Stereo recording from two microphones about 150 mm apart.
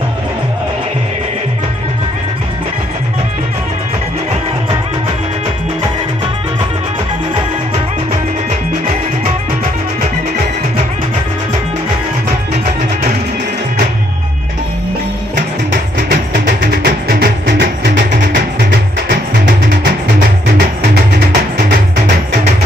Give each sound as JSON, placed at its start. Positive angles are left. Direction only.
{"t": 16.3, "sound": "music", "side_deg": -90}
{"t": 21.5, "sound": "music", "side_deg": -65}